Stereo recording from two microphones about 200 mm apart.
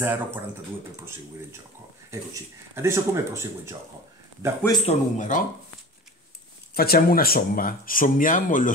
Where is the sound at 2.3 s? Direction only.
15° right (ahead or behind).